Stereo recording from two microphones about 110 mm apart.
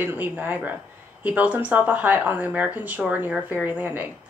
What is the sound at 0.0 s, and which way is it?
A woman's voice, 15° right (ahead or behind).